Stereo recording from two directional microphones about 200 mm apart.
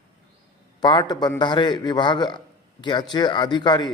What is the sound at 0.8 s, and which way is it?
A man's voice, 20° left (ahead or behind).